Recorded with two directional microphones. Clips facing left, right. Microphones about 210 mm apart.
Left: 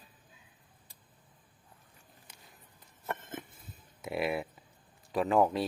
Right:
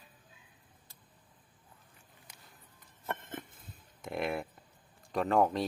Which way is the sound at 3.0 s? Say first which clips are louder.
Left 1 dB; 5° left (ahead or behind).